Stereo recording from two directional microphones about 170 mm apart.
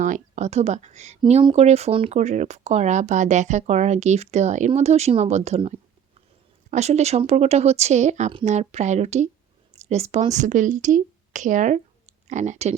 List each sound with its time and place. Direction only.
0.0 s speech: 45° right (ahead or behind)